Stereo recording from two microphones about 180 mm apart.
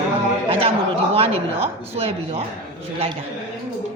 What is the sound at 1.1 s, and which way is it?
A man's voice, 35° right (ahead or behind).